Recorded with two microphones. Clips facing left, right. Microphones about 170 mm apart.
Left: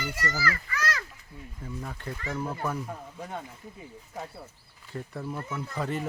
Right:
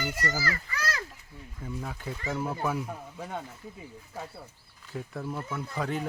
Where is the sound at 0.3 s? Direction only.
35° right (ahead or behind).